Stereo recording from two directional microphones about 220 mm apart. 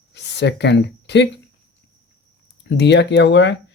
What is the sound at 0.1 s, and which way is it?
Speech, 50° left (ahead or behind).